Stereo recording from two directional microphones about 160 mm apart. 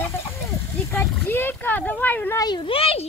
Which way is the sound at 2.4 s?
30° left (ahead or behind).